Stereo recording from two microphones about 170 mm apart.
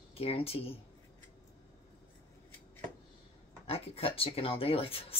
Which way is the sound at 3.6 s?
35° left (ahead or behind).